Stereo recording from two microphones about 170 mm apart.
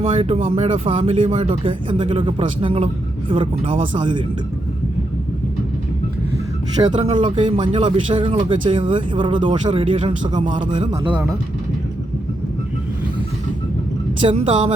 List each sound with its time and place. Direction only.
0.0 s speech: 35° right (ahead or behind)
6.9 s speech: 30° right (ahead or behind)
11.1 s speech: 10° right (ahead or behind)
14.2 s speech: 30° right (ahead or behind)